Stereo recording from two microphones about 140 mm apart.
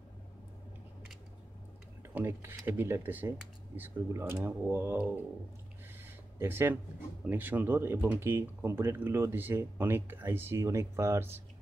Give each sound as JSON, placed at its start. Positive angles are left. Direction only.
{"t": 2.1, "sound": "speech", "side_deg": -15}
{"t": 6.0, "sound": "a sound", "side_deg": -15}
{"t": 7.2, "sound": "speech", "side_deg": -15}